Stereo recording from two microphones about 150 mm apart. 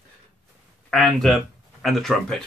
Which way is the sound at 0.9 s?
Centre (ahead or behind).